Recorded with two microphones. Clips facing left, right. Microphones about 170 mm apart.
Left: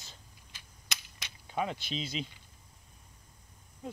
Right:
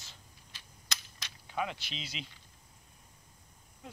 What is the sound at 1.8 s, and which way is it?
Speech, 45° left (ahead or behind).